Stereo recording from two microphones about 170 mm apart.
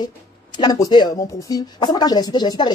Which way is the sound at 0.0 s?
25° left (ahead or behind).